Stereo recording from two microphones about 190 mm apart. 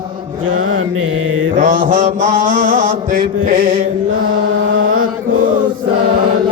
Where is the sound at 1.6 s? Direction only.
45° right (ahead or behind).